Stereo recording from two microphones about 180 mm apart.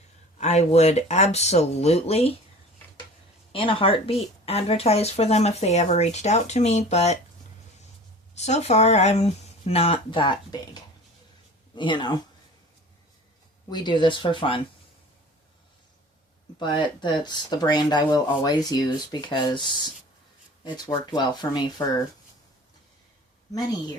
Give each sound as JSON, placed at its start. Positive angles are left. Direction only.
{"t": 0.3, "sound": "speech", "side_deg": 40}
{"t": 3.5, "sound": "speech", "side_deg": 30}
{"t": 8.4, "sound": "speech", "side_deg": 40}
{"t": 13.7, "sound": "speech", "side_deg": 25}
{"t": 16.6, "sound": "speech", "side_deg": 25}